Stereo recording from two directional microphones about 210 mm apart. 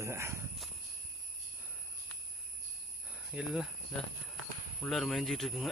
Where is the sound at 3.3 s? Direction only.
5° right (ahead or behind).